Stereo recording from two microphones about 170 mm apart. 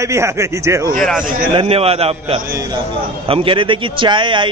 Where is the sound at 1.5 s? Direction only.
35° right (ahead or behind).